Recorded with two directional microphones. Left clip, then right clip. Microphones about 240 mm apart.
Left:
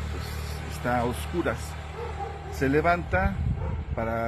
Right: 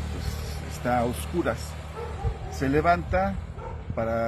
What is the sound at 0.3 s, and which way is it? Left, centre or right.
Music, left.